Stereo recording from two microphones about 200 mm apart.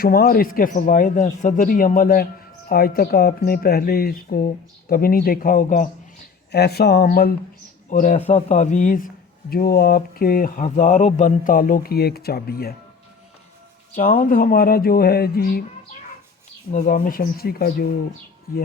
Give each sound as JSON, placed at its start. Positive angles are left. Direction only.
{"t": 0.0, "sound": "speech", "side_deg": 50}
{"t": 6.5, "sound": "a man's voice", "side_deg": 55}
{"t": 14.1, "sound": "speech", "side_deg": 45}
{"t": 16.7, "sound": "speech", "side_deg": 40}